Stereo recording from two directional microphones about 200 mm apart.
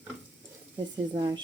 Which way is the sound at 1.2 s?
25° right (ahead or behind).